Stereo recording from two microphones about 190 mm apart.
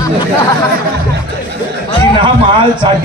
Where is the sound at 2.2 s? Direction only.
25° right (ahead or behind).